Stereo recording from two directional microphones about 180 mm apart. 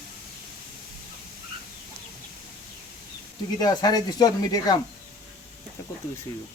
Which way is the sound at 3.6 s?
20° left (ahead or behind).